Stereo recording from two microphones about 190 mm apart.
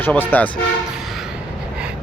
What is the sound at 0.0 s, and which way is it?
Speech, 10° left (ahead or behind).